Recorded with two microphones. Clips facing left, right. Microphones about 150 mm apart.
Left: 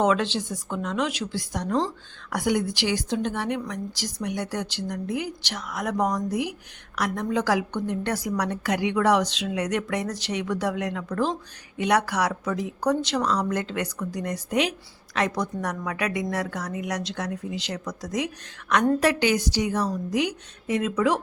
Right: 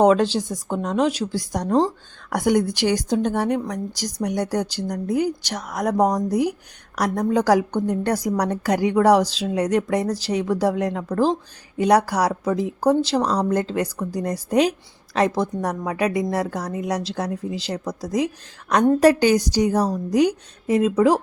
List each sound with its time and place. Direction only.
0.0 s a woman's voice: 40° right (ahead or behind)
2.3 s a woman's voice: 45° right (ahead or behind)